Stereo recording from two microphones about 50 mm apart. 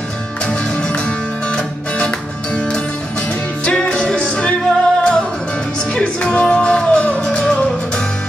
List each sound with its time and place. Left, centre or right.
0.5 s music: centre